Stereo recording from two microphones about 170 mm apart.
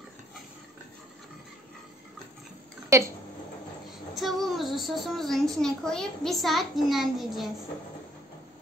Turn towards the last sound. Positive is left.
turn(degrees=0)  # may be behind; listen again after turning